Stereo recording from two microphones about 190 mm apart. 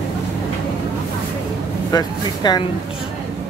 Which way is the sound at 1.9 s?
20° left (ahead or behind).